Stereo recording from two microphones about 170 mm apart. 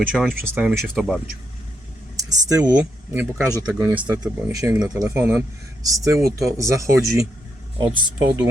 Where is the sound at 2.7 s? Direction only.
10° right (ahead or behind).